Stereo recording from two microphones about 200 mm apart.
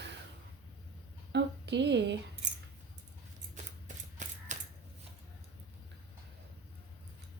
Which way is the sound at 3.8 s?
35° right (ahead or behind).